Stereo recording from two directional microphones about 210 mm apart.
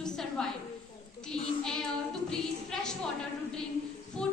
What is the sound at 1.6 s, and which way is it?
Child singing, centre (ahead or behind).